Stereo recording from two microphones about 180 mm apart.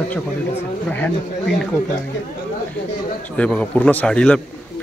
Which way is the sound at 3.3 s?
5° left (ahead or behind).